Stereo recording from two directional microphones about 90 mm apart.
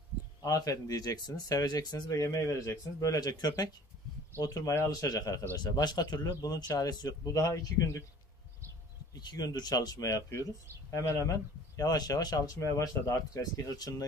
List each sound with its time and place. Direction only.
0.4 s speech: 45° left (ahead or behind)
2.1 s speech: 35° left (ahead or behind)
7.2 s speech: 35° left (ahead or behind)
9.1 s speech: 50° left (ahead or behind)